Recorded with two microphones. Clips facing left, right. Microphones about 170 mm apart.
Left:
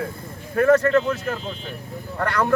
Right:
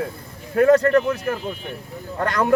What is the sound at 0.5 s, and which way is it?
Speech, 15° right (ahead or behind).